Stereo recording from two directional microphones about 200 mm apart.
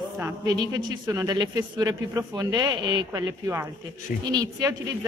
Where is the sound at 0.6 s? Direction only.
20° right (ahead or behind).